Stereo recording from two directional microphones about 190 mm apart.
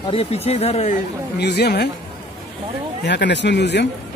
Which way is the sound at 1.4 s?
60° left (ahead or behind).